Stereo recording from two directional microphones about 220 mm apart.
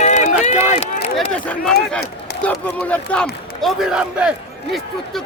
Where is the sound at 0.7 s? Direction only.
30° left (ahead or behind).